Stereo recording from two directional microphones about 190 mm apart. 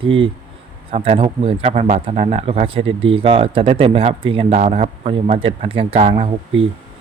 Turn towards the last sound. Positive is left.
turn(degrees=-30)  # may be behind; listen again after turning